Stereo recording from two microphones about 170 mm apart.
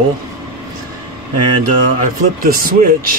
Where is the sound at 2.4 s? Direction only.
55° right (ahead or behind).